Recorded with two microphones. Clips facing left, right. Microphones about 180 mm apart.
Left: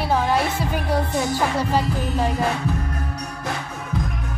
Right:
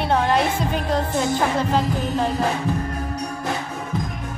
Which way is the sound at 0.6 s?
10° left (ahead or behind).